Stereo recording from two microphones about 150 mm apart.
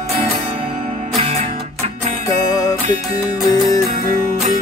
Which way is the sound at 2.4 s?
25° left (ahead or behind).